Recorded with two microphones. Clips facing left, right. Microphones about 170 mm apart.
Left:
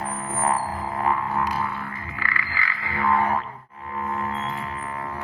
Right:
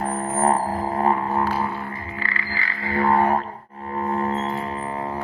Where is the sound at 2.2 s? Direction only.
30° right (ahead or behind).